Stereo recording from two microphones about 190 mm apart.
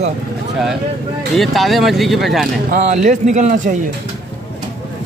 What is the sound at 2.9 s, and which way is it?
Speech, 40° right (ahead or behind).